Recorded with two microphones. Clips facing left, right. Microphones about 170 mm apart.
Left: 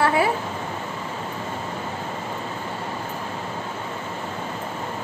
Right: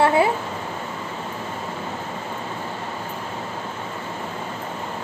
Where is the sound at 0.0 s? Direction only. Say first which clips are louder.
Right 3 dB; 25° right (ahead or behind).